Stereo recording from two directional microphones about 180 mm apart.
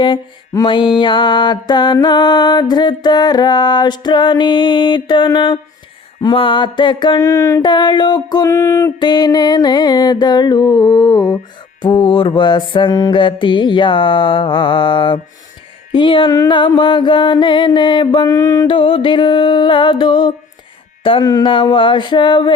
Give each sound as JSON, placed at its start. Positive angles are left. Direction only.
{"t": 0.0, "sound": "mantra", "side_deg": 25}